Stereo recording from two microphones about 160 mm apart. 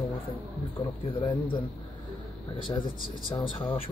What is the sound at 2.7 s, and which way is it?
Speech, 25° left (ahead or behind).